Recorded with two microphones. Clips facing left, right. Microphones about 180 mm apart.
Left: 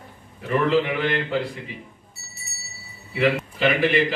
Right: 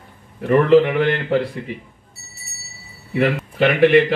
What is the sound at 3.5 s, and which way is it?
Speech, 60° right (ahead or behind).